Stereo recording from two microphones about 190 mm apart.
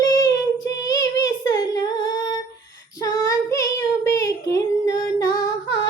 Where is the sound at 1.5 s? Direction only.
20° left (ahead or behind).